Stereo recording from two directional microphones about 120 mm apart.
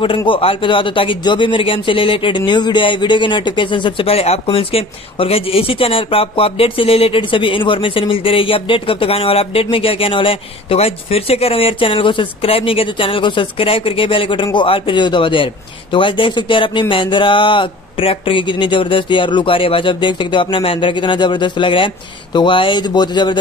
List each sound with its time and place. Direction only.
0.0 s speech: 45° left (ahead or behind)